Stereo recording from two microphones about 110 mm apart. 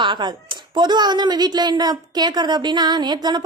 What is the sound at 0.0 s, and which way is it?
A woman's voice, 45° right (ahead or behind).